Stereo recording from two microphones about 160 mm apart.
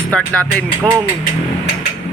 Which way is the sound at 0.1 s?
5° left (ahead or behind).